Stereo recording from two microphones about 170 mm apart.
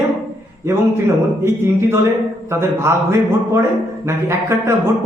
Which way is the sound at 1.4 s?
15° right (ahead or behind).